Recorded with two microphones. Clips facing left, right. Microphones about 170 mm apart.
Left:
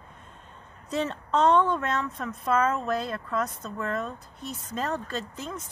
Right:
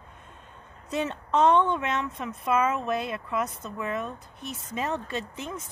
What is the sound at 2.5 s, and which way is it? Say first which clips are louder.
Speech: even; 5° right (ahead or behind).